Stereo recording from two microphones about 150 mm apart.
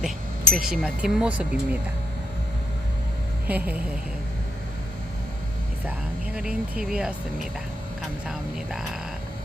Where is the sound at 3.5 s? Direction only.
10° right (ahead or behind).